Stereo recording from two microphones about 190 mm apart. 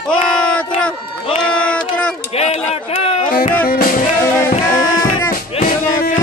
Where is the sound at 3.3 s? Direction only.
45° left (ahead or behind).